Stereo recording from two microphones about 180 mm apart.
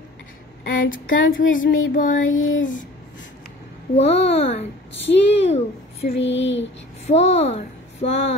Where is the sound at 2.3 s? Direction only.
90° left.